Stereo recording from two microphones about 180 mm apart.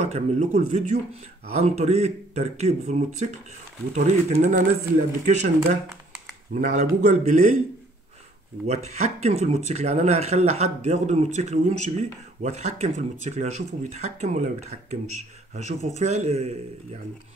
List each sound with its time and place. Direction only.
0.0 s speech: 40° right (ahead or behind)
8.6 s speech: 35° right (ahead or behind)